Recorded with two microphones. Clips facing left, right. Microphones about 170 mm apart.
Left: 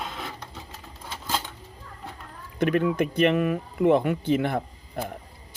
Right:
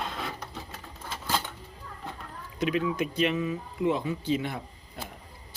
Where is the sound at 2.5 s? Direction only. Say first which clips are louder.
Left 5 dB; 55° left (ahead or behind).